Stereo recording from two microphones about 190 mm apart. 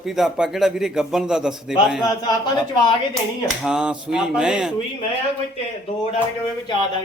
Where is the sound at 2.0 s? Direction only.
20° left (ahead or behind).